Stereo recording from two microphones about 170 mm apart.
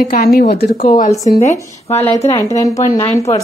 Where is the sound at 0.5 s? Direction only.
70° left (ahead or behind).